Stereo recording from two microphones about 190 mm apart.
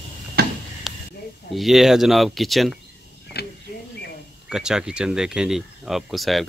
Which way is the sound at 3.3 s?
55° left (ahead or behind).